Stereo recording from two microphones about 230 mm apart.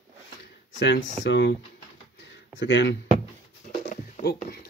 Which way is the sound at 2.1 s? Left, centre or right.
Left.